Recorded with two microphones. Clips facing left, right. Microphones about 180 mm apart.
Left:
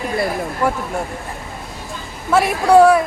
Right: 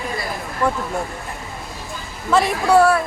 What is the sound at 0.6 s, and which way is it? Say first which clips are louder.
Speech: left 1 dB; 10° left (ahead or behind).